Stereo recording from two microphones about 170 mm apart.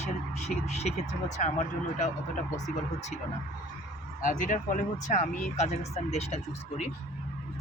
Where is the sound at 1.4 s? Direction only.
45° left (ahead or behind).